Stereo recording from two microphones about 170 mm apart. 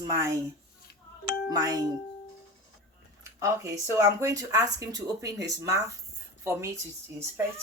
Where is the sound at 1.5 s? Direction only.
20° right (ahead or behind).